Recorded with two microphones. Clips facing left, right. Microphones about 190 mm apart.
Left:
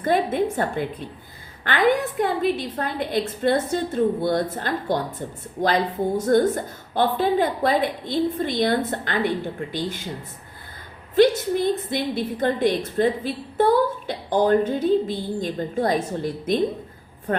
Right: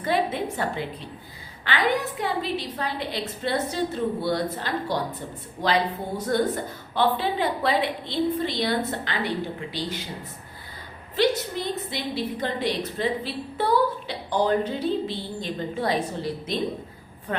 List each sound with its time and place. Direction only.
0.0 s a woman's voice: 50° left (ahead or behind)
11.1 s a woman's voice: 50° left (ahead or behind)